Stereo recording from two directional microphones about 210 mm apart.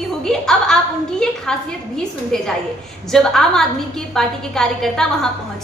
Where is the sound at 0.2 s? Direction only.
5° left (ahead or behind).